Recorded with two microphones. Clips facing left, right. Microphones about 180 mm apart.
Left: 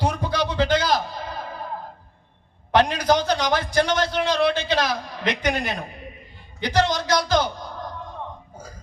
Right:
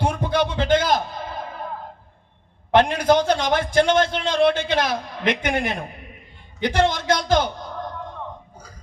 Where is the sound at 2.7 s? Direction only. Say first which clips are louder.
Right 2 dB; 50° right (ahead or behind).